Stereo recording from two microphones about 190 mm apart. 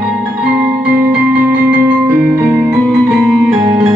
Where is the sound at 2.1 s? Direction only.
10° right (ahead or behind).